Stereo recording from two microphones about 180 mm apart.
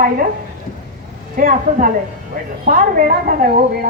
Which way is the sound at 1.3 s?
50° right (ahead or behind).